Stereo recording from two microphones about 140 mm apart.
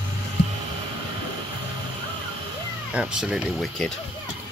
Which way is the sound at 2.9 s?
5° right (ahead or behind).